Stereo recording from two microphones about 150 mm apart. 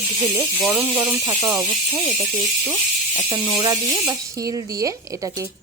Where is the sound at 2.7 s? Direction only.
10° right (ahead or behind).